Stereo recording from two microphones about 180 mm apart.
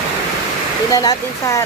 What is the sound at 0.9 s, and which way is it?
Speech, 20° left (ahead or behind).